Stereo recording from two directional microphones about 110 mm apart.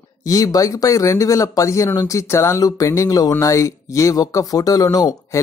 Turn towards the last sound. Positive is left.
turn(degrees=35)  # may be behind; listen again after turning